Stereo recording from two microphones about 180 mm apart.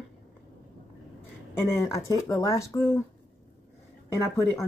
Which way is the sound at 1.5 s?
15° left (ahead or behind).